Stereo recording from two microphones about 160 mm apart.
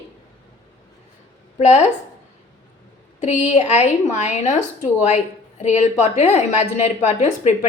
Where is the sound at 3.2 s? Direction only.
45° left (ahead or behind).